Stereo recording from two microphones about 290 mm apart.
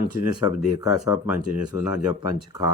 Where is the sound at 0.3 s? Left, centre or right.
Centre.